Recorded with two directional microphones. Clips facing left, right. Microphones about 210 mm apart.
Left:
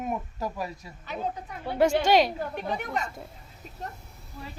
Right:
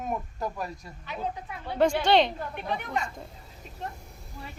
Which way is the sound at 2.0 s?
10° left (ahead or behind).